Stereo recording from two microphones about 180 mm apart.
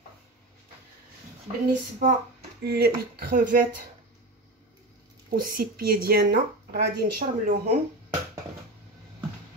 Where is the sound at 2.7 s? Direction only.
60° right (ahead or behind).